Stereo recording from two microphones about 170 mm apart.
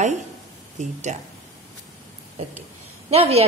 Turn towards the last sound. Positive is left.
turn(degrees=-35)  # may be behind; listen again after turning